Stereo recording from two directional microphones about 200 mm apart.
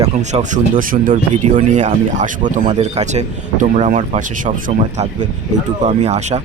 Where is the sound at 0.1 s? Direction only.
35° right (ahead or behind).